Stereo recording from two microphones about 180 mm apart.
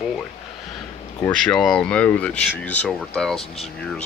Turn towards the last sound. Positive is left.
turn(degrees=35)  # may be behind; listen again after turning